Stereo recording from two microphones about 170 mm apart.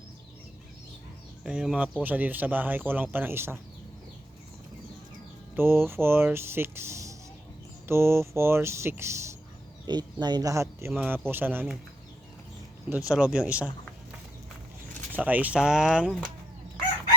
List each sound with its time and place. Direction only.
1.5 s speech: 5° right (ahead or behind)
5.5 s speech: 15° right (ahead or behind)
13.1 s speech: 5° right (ahead or behind)
15.1 s speech: 10° right (ahead or behind)